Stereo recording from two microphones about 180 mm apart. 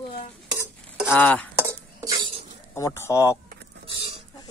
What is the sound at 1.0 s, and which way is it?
Speech, 10° left (ahead or behind).